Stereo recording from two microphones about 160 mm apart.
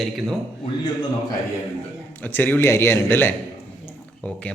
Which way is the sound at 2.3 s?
10° left (ahead or behind).